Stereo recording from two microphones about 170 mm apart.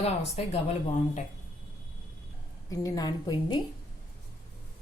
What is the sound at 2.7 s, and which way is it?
Speech, 20° left (ahead or behind).